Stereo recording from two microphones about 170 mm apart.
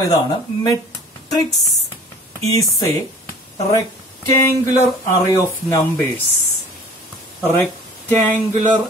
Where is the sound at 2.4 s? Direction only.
20° left (ahead or behind).